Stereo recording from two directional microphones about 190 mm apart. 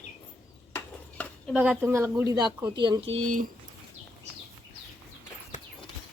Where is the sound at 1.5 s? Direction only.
5° right (ahead or behind); by 3.0 s 25° right (ahead or behind).